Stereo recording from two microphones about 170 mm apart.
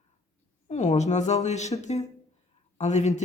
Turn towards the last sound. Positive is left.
turn(degrees=40)  # may be behind; listen again after turning